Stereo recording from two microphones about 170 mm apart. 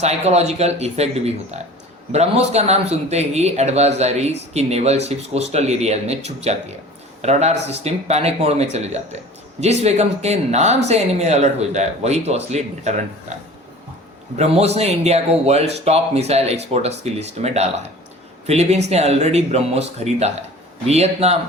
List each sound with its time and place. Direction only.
0.0 s speech: 40° right (ahead or behind)
14.3 s speech: 40° right (ahead or behind)